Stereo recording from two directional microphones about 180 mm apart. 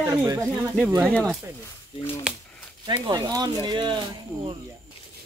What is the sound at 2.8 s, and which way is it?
Speech, 20° right (ahead or behind).